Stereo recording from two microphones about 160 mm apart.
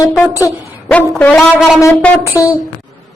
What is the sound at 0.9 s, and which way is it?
Speech, 10° left (ahead or behind).